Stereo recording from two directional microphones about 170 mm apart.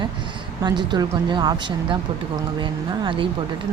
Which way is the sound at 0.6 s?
25° right (ahead or behind).